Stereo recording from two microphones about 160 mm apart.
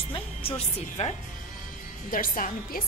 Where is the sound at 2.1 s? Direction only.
60° left (ahead or behind).